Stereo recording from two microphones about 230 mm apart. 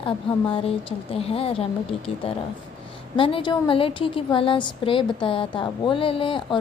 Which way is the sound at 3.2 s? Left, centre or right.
Left.